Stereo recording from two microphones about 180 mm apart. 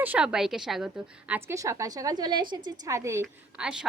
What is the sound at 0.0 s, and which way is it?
A woman's voice, 5° right (ahead or behind).